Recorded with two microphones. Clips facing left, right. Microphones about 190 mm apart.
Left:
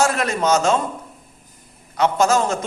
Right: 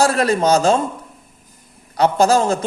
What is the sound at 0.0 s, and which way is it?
Speech, 35° right (ahead or behind).